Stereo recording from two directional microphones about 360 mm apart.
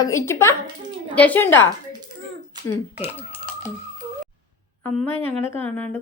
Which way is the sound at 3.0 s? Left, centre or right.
Centre.